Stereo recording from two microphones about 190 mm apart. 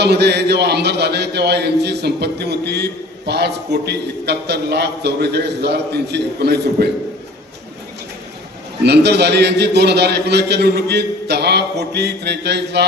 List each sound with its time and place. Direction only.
0.0 s a man's voice: 60° right (ahead or behind)
8.8 s a man's voice: 60° right (ahead or behind)